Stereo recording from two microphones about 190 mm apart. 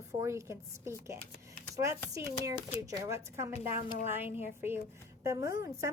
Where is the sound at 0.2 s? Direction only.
15° right (ahead or behind).